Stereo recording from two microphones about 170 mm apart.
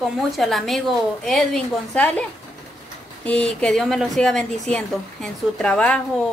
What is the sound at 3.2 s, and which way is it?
A woman's voice, 5° left (ahead or behind).